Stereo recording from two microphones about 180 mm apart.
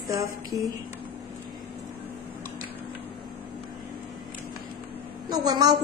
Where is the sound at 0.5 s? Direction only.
20° right (ahead or behind).